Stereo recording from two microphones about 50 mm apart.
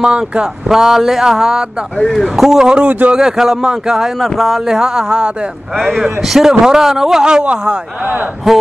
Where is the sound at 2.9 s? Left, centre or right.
Right.